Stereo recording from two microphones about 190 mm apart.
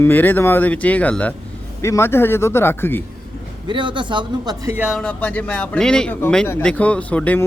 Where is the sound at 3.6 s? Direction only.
25° right (ahead or behind).